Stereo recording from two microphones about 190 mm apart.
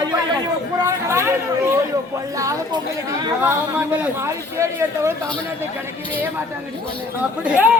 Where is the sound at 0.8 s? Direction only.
15° right (ahead or behind).